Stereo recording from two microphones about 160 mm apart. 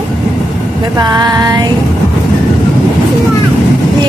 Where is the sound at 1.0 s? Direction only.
25° right (ahead or behind).